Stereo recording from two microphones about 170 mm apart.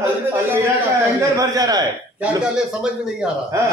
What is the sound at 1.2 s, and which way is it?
Speech, 20° right (ahead or behind).